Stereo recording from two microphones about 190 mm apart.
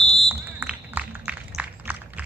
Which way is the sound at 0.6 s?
10° right (ahead or behind).